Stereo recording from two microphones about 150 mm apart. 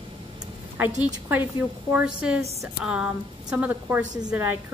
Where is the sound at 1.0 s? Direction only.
10° right (ahead or behind).